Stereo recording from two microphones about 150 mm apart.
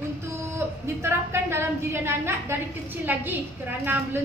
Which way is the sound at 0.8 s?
20° right (ahead or behind).